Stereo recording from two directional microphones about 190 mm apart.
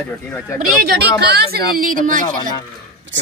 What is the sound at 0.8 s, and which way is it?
Speech, 55° right (ahead or behind).